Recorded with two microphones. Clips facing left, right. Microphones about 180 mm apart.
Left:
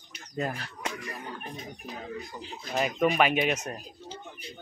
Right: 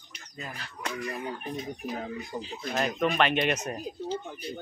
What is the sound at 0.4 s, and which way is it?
Speech, 50° left (ahead or behind).